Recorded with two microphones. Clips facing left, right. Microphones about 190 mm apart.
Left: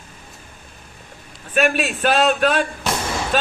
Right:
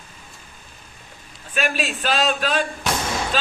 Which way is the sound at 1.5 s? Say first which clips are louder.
Left 5 dB; 55° left (ahead or behind).